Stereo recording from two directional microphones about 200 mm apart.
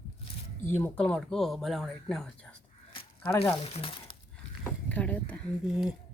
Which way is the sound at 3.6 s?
30° left (ahead or behind).